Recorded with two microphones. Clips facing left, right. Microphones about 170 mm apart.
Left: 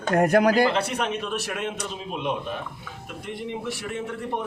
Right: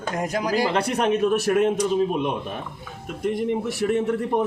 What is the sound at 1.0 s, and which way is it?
A man's voice, 45° right (ahead or behind).